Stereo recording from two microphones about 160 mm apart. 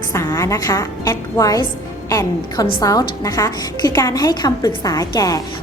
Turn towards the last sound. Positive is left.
turn(degrees=20)  # may be behind; listen again after turning